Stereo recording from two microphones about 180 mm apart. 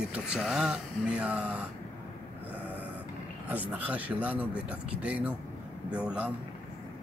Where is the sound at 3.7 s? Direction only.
10° right (ahead or behind).